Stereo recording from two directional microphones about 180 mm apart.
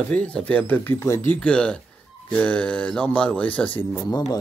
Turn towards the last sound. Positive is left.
turn(degrees=20)  # may be behind; listen again after turning